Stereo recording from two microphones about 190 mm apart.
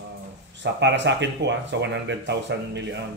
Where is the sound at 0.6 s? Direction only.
70° right (ahead or behind).